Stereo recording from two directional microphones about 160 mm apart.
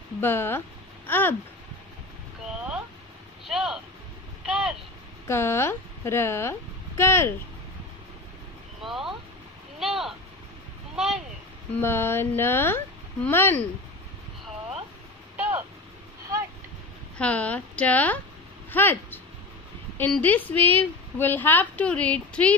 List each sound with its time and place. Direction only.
0.2 s speech: 15° left (ahead or behind)
3.4 s speech: 5° right (ahead or behind)
4.5 s vehicle: 5° right (ahead or behind)
5.3 s a woman's voice: 15° left (ahead or behind)
8.8 s vehicle: centre (ahead or behind)
11.0 s a sound: 5° right (ahead or behind)
11.7 s a woman's voice: 15° left (ahead or behind)
17.2 s a woman's voice: 10° left (ahead or behind)